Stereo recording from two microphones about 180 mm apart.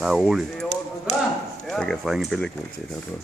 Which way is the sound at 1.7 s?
Centre (ahead or behind).